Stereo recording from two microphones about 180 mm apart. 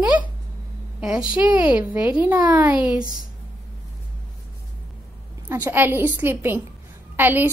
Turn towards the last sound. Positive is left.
turn(degrees=-10)  # may be behind; listen again after turning